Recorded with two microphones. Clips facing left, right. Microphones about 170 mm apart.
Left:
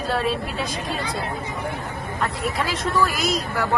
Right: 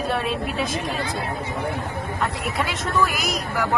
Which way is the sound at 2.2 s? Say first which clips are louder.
Left 1 dB; centre (ahead or behind).